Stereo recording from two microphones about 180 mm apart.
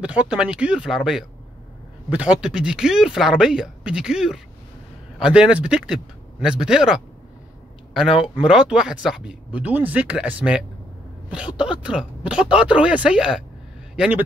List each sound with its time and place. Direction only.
0.0 s speech: 5° right (ahead or behind)